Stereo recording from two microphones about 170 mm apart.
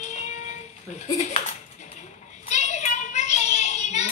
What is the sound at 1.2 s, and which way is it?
Dishes, 40° left (ahead or behind).